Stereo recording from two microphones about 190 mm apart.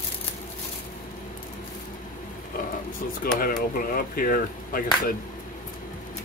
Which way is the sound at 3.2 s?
50° left (ahead or behind).